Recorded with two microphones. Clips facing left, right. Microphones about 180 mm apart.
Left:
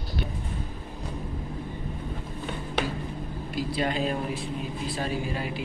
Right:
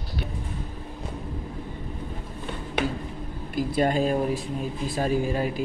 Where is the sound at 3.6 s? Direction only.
50° right (ahead or behind).